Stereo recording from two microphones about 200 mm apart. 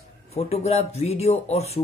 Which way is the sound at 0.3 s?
30° left (ahead or behind).